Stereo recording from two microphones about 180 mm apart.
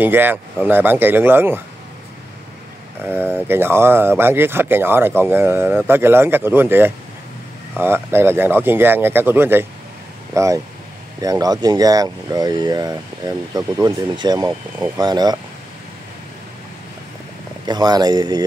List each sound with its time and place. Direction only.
0.0 s speech: 10° right (ahead or behind)
3.0 s speech: 10° right (ahead or behind)
17.6 s speech: 25° right (ahead or behind)